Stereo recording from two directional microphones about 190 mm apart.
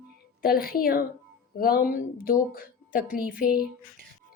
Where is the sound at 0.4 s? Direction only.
50° left (ahead or behind).